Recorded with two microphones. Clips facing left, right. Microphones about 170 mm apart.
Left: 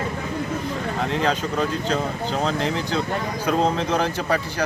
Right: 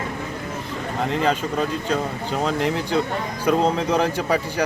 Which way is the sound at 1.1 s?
5° right (ahead or behind).